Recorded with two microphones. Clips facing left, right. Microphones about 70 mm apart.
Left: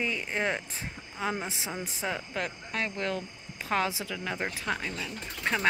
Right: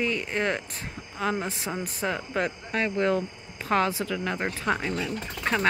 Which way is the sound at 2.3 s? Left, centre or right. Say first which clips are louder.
Right 6 dB; centre.